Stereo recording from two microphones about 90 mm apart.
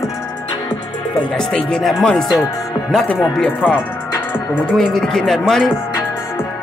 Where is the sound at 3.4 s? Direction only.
15° left (ahead or behind).